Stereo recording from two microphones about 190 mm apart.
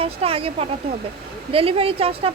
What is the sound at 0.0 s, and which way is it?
Speech, 30° right (ahead or behind).